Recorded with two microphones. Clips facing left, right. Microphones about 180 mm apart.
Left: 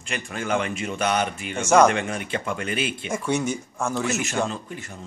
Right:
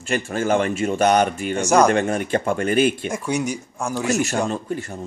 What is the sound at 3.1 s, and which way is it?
A man's voice, 10° right (ahead or behind).